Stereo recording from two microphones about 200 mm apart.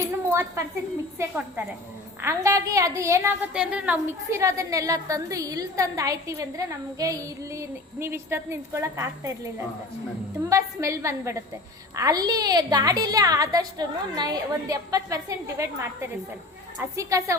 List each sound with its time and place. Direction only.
0.0 s a sound: 15° right (ahead or behind)
1.2 s a woman's voice: 10° right (ahead or behind)
10.5 s a woman's voice: 15° right (ahead or behind)